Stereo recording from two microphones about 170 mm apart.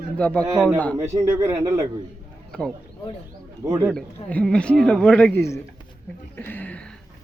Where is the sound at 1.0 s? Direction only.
15° right (ahead or behind).